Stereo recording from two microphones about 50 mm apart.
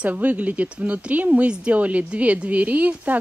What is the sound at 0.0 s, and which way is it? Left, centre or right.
A woman's voice, right.